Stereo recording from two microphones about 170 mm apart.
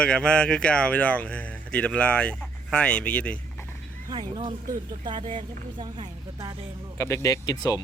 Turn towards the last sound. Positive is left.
turn(degrees=20)  # may be behind; listen again after turning